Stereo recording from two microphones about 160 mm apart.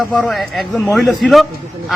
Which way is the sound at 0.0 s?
5° left (ahead or behind).